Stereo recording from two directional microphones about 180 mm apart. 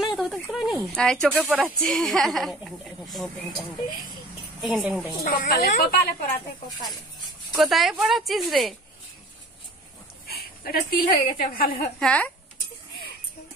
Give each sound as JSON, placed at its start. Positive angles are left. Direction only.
{"t": 0.0, "sound": "a sound", "side_deg": 0}
{"t": 1.3, "sound": "speech", "side_deg": -10}
{"t": 1.6, "sound": "speech", "side_deg": 5}
{"t": 4.6, "sound": "speech", "side_deg": -5}
{"t": 5.2, "sound": "a woman's voice", "side_deg": 50}
{"t": 7.5, "sound": "speech", "side_deg": 0}
{"t": 10.2, "sound": "a woman's voice", "side_deg": 55}
{"t": 12.0, "sound": "speech", "side_deg": 5}